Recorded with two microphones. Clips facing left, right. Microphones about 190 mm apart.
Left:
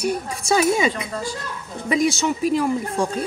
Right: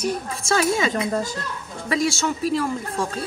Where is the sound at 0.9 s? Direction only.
45° right (ahead or behind).